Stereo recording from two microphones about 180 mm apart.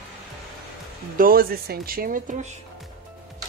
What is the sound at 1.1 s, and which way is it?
Speech, 55° right (ahead or behind).